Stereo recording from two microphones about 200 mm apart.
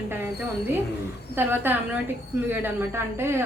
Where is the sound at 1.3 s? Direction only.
10° right (ahead or behind).